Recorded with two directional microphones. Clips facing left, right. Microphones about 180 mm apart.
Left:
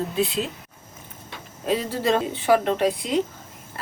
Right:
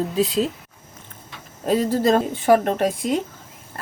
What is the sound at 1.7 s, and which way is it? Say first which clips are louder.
A woman's voice: right 4 dB; 45° right (ahead or behind).